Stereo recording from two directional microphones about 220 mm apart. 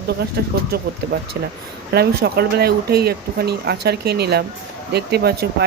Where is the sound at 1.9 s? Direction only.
45° right (ahead or behind).